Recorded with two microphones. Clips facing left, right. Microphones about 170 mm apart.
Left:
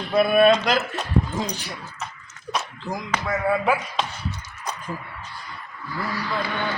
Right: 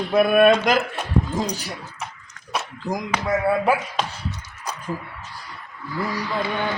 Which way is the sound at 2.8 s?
15° right (ahead or behind).